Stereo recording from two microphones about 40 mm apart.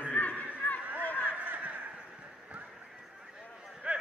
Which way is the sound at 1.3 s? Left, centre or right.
Right.